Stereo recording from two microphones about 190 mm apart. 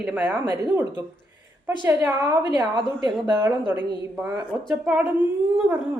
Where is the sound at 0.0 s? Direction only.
5° right (ahead or behind).